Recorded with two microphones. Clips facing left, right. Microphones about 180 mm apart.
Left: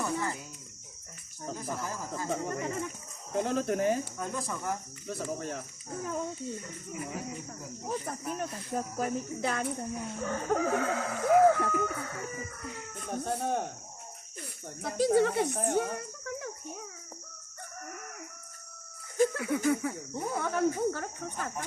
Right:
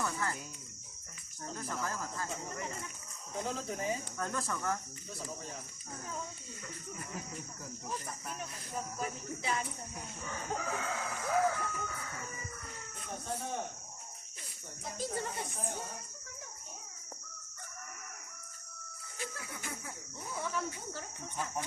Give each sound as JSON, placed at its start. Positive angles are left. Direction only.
{"t": 0.0, "sound": "cricket", "side_deg": 20}
{"t": 1.5, "sound": "speech", "side_deg": 10}
{"t": 2.3, "sound": "speech", "side_deg": 70}
{"t": 4.2, "sound": "speech", "side_deg": 15}
{"t": 5.0, "sound": "speech", "side_deg": 65}
{"t": 8.4, "sound": "speech", "side_deg": 50}
{"t": 13.1, "sound": "speech", "side_deg": 55}
{"t": 14.8, "sound": "speech", "side_deg": 75}
{"t": 19.1, "sound": "music", "side_deg": 45}
{"t": 19.4, "sound": "speech", "side_deg": 65}